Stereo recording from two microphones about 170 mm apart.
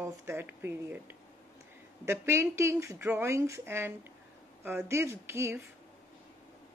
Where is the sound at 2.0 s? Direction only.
15° right (ahead or behind).